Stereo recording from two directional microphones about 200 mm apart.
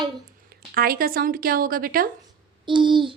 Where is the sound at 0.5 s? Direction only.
50° right (ahead or behind).